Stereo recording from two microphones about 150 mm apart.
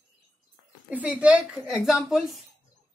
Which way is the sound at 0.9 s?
10° right (ahead or behind).